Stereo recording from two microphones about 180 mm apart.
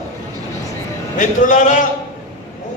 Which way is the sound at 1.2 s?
45° left (ahead or behind).